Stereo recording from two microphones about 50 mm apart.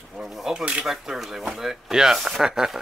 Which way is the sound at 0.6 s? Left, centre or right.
Right.